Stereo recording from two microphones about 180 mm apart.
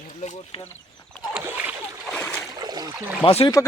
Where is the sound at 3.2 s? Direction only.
35° left (ahead or behind).